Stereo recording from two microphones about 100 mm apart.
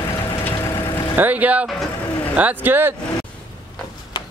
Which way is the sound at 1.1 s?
15° right (ahead or behind).